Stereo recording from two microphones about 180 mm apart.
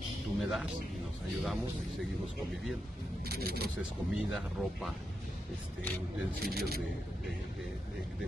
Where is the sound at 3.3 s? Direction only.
60° right (ahead or behind).